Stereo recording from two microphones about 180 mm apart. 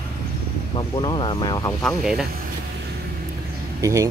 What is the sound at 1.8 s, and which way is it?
Speech, centre (ahead or behind).